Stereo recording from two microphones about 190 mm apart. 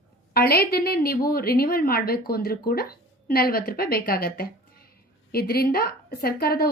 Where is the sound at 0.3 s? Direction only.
55° left (ahead or behind).